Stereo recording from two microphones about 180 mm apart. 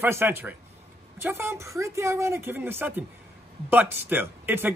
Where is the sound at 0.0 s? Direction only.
15° right (ahead or behind).